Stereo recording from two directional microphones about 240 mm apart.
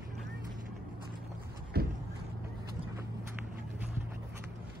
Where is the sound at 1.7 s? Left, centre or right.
Right.